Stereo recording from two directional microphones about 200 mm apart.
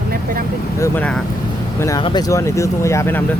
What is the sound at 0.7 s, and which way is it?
Speech, 10° left (ahead or behind).